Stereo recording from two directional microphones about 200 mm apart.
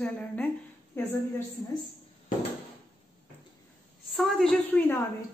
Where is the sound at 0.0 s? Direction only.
5° left (ahead or behind).